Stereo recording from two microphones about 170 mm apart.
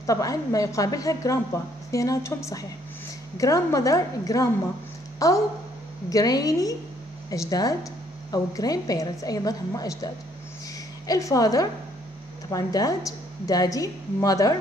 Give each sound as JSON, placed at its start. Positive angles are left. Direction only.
{"t": 0.0, "sound": "a woman's voice", "side_deg": 20}